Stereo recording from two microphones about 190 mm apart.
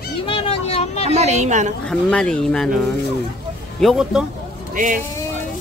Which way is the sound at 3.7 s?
Centre (ahead or behind).